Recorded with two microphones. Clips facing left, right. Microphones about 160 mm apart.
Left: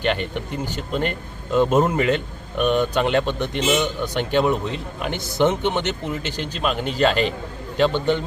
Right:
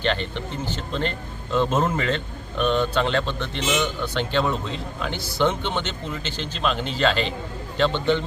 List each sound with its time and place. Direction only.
0.0 s speech: 10° left (ahead or behind)
7.1 s a man's voice: 50° left (ahead or behind)
7.8 s speech: 15° left (ahead or behind)